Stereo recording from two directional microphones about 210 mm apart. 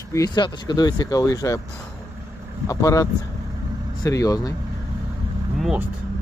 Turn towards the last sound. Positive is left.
turn(degrees=0)  # may be behind; listen again after turning